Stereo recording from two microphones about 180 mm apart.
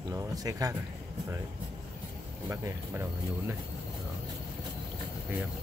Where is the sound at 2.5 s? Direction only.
15° right (ahead or behind).